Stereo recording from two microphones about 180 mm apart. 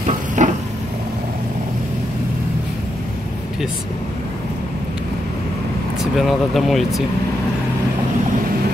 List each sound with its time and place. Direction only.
0.4 s vehicle: 45° right (ahead or behind)
6.1 s speech: centre (ahead or behind)